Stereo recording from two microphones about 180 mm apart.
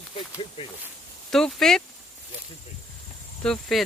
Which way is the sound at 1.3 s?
5° left (ahead or behind).